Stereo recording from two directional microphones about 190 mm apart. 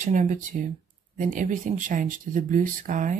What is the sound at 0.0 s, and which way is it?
Speech, 40° right (ahead or behind).